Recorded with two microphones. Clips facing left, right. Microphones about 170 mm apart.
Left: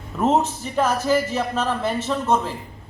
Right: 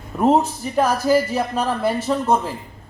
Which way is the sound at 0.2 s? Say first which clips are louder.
Right 3 dB; 10° right (ahead or behind).